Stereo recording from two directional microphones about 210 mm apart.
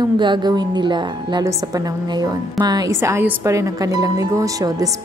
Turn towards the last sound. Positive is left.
turn(degrees=-15)  # may be behind; listen again after turning